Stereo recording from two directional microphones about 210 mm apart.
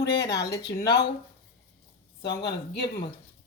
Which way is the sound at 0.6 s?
50° left (ahead or behind).